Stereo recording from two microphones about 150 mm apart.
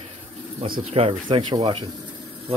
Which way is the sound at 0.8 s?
40° right (ahead or behind).